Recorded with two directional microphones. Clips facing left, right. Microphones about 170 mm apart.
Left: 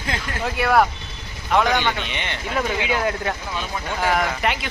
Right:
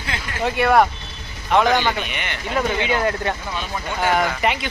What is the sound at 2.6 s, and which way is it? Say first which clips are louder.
Speech: right 2 dB; 5° left (ahead or behind).